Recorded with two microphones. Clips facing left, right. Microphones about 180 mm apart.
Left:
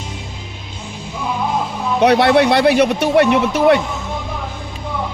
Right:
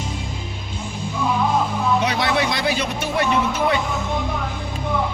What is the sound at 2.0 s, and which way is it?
Speech, 65° left (ahead or behind).